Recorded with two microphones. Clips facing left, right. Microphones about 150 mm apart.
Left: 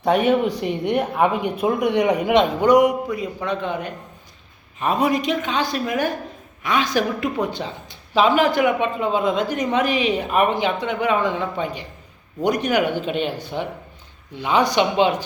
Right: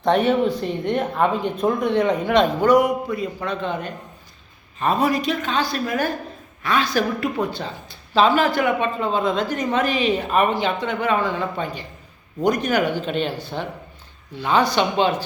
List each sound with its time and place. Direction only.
0.0 s speech: 10° left (ahead or behind)